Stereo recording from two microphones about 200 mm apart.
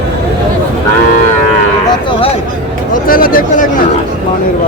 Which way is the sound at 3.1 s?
45° left (ahead or behind).